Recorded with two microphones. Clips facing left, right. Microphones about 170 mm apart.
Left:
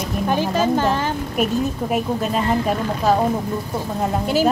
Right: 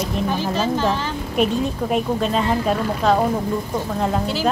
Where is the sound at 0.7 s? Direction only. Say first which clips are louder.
Left 2 dB; 50° left (ahead or behind).